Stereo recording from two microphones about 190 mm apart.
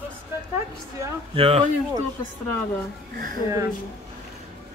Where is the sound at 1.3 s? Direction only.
30° right (ahead or behind).